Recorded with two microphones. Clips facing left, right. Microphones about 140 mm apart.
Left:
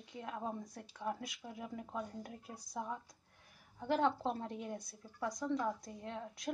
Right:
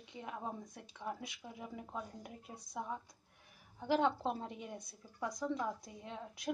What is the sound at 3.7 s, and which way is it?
A woman's voice, centre (ahead or behind).